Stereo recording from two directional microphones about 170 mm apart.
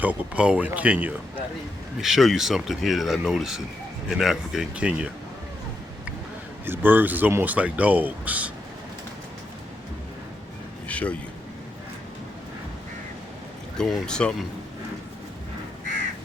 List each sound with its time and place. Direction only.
0.0 s speech: 10° right (ahead or behind)
6.7 s speech: 10° right (ahead or behind)
10.8 s a sound: 10° left (ahead or behind)
13.7 s speech: 5° left (ahead or behind)